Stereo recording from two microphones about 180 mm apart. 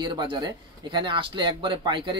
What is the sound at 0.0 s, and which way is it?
A man's voice, 25° right (ahead or behind).